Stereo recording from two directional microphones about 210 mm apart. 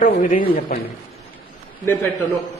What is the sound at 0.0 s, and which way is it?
Speech, 40° left (ahead or behind).